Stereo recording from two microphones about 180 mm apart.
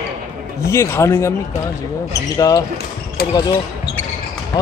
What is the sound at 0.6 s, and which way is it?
Speech, 15° left (ahead or behind).